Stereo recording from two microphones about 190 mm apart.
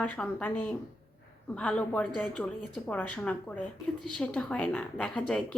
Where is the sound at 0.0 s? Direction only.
5° left (ahead or behind).